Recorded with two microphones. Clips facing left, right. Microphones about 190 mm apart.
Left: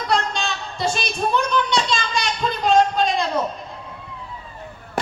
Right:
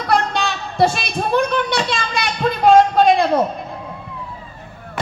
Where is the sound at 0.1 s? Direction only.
60° right (ahead or behind).